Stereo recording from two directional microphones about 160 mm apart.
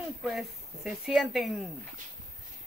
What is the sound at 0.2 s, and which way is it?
Speech, centre (ahead or behind).